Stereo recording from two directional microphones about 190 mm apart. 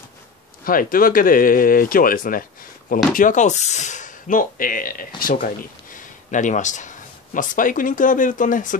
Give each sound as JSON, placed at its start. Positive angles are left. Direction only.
{"t": 0.7, "sound": "speech", "side_deg": 50}